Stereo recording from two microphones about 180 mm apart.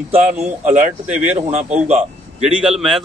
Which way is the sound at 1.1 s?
10° right (ahead or behind).